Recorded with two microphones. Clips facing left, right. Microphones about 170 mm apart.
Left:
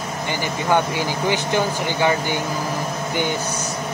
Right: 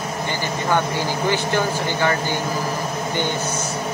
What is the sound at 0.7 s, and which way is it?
Speech, 15° left (ahead or behind).